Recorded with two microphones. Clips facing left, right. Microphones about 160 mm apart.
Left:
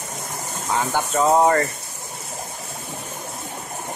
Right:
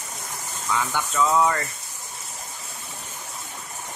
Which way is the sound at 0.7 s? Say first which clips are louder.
Left 4 dB; 45° left (ahead or behind).